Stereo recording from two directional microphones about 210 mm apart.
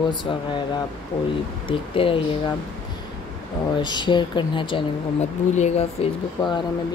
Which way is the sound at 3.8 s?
20° left (ahead or behind).